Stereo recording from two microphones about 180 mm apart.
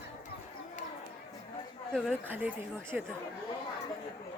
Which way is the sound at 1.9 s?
5° right (ahead or behind).